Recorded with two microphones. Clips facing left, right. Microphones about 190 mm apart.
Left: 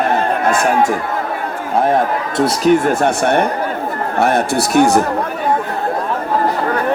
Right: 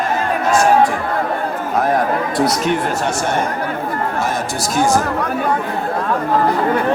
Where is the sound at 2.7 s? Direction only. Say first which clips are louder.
Left 6 dB; 55° left (ahead or behind).